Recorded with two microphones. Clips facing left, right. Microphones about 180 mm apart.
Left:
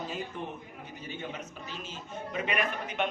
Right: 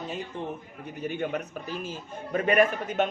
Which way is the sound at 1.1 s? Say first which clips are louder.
Right 8 dB; 55° right (ahead or behind).